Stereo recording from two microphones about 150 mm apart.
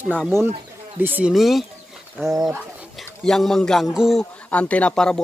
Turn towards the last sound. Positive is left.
turn(degrees=5)  # may be behind; listen again after turning